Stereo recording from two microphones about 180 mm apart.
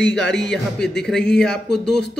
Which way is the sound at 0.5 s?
5° left (ahead or behind).